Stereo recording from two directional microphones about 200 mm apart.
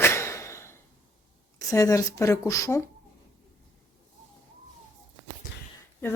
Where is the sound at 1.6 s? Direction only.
15° left (ahead or behind).